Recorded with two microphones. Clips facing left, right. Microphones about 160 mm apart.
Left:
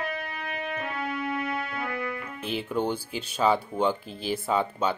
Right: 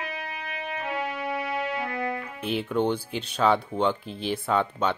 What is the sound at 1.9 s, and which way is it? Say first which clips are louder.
Music: right 3 dB; 30° right (ahead or behind).